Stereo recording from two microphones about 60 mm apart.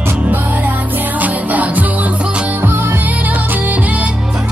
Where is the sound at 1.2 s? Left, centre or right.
Right.